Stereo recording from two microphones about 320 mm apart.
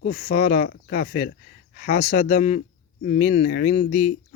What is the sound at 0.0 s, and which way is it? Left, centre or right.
Speech, left.